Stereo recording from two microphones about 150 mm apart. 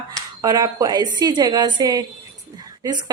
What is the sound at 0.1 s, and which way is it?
A woman's voice, 25° right (ahead or behind).